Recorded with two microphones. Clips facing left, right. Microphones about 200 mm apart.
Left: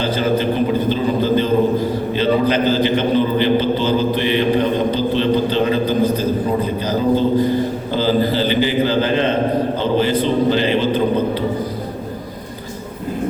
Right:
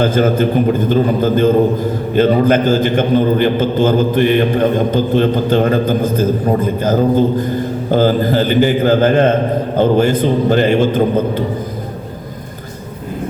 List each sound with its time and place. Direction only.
0.0 s a man's voice: 50° right (ahead or behind)